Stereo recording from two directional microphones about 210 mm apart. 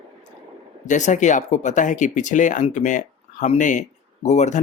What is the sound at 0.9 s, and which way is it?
Speech, 35° left (ahead or behind).